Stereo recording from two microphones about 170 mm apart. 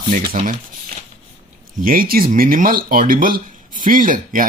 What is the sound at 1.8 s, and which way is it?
Speech, 55° right (ahead or behind).